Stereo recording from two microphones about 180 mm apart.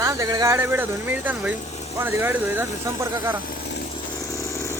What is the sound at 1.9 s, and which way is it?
Speech, 10° right (ahead or behind).